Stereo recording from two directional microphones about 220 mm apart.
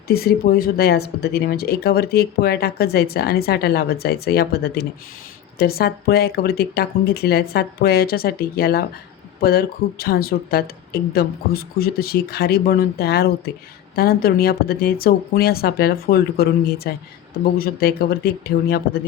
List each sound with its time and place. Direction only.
0.1 s speech: 45° left (ahead or behind)